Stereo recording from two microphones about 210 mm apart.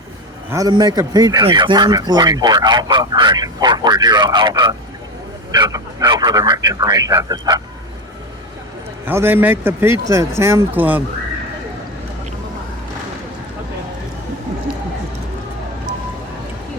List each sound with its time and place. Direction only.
0.5 s speech: 15° right (ahead or behind)
9.0 s speech: 10° right (ahead or behind)